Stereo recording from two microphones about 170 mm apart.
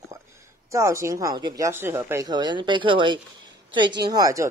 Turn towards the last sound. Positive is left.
turn(degrees=-20)  # may be behind; listen again after turning